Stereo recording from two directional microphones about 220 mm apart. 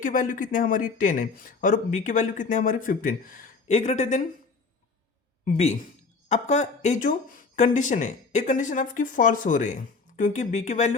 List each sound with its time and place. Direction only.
0.0 s speech: 40° left (ahead or behind)
5.5 s speech: 30° left (ahead or behind)